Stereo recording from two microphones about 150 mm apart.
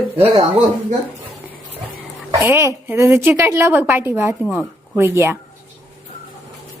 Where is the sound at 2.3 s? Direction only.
20° right (ahead or behind).